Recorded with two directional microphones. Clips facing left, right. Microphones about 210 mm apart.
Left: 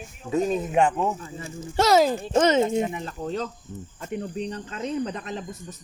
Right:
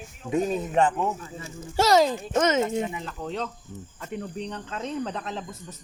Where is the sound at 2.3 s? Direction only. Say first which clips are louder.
Left 3 dB; 30° left (ahead or behind).